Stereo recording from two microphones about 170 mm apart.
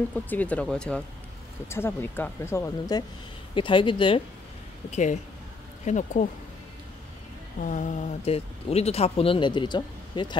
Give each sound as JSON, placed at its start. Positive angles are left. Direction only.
{"t": 0.1, "sound": "speech", "side_deg": 10}
{"t": 3.5, "sound": "speech", "side_deg": 30}
{"t": 4.9, "sound": "speech", "side_deg": 45}
{"t": 7.6, "sound": "speech", "side_deg": 50}